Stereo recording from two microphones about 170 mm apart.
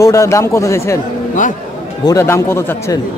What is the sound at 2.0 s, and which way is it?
A man's voice, 20° left (ahead or behind).